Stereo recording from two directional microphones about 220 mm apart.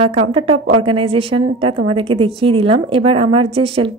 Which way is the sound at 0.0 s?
25° right (ahead or behind).